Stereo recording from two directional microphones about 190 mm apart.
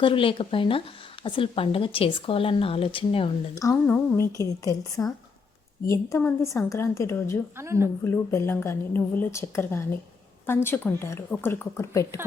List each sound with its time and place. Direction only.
0.0 s speech: 30° left (ahead or behind)
3.6 s a woman's voice: 15° left (ahead or behind)
7.5 s speech: 15° right (ahead or behind)
8.0 s a woman's voice: 15° left (ahead or behind)